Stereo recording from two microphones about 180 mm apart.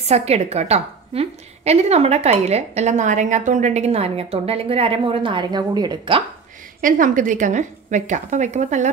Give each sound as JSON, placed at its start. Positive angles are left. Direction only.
{"t": 0.0, "sound": "a woman's voice", "side_deg": -35}
{"t": 6.8, "sound": "a woman's voice", "side_deg": -45}